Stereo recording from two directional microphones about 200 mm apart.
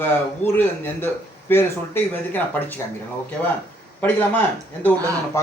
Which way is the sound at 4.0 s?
10° left (ahead or behind).